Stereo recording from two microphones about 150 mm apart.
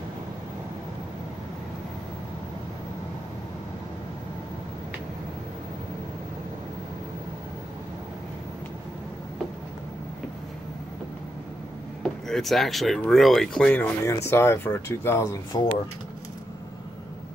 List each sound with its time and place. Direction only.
12.0 s speech: 5° left (ahead or behind)
15.5 s speech: 30° left (ahead or behind)